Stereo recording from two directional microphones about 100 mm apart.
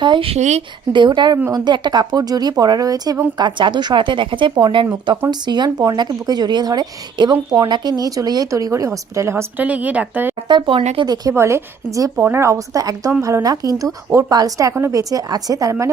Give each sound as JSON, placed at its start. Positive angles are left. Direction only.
{"t": 0.0, "sound": "a sound", "side_deg": -50}
{"t": 0.9, "sound": "a woman's voice", "side_deg": -50}
{"t": 3.3, "sound": "a woman's voice", "side_deg": -50}
{"t": 9.6, "sound": "speech", "side_deg": -15}
{"t": 10.5, "sound": "speech", "side_deg": -60}
{"t": 11.0, "sound": "a woman's voice", "side_deg": -40}
{"t": 11.3, "sound": "a woman's voice", "side_deg": -30}